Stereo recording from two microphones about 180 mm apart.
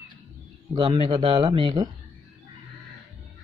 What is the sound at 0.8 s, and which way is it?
Speech, 30° right (ahead or behind).